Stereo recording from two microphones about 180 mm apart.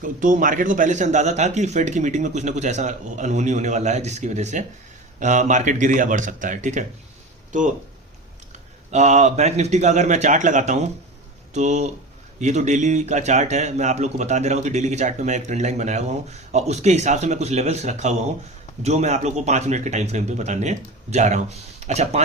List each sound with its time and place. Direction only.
0.0 s speech: 45° right (ahead or behind)
8.9 s speech: 40° right (ahead or behind)